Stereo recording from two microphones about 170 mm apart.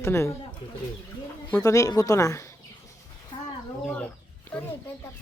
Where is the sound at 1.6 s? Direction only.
20° left (ahead or behind).